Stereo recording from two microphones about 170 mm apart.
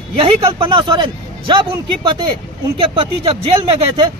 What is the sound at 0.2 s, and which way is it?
Speech, 30° right (ahead or behind).